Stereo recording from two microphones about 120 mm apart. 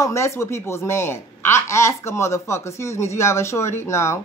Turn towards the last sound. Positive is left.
turn(degrees=25)  # may be behind; listen again after turning